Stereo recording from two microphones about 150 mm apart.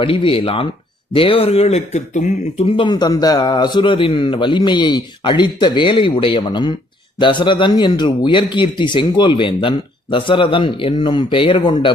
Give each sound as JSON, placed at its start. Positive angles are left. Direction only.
{"t": 0.0, "sound": "speech", "side_deg": 35}